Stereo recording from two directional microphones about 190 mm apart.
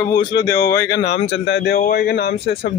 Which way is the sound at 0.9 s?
65° left (ahead or behind).